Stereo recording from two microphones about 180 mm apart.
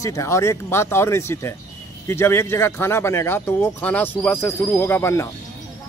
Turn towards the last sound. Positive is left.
turn(degrees=15)  # may be behind; listen again after turning